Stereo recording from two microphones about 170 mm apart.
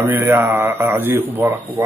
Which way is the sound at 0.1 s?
10° right (ahead or behind).